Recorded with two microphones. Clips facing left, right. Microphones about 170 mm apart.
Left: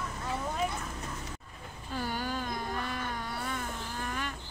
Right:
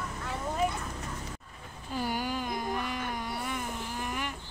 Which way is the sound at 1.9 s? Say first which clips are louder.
Right 2 dB; 15° right (ahead or behind).